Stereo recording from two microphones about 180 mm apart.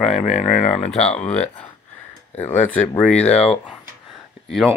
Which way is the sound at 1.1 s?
35° left (ahead or behind).